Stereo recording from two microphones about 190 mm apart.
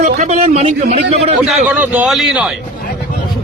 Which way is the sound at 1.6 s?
10° right (ahead or behind).